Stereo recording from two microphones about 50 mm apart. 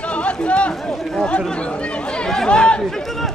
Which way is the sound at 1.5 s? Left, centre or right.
Left.